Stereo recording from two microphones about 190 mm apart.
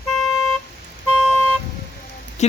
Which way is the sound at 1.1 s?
10° left (ahead or behind).